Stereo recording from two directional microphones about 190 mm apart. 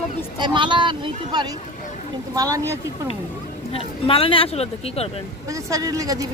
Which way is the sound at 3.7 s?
30° left (ahead or behind).